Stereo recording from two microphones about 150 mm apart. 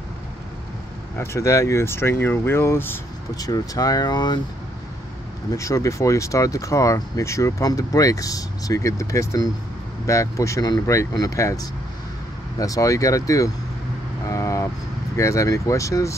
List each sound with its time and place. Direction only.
1.1 s speech: 15° left (ahead or behind)
5.5 s speech: 20° left (ahead or behind)
14.3 s vehicle: 20° left (ahead or behind)
15.1 s speech: 20° left (ahead or behind)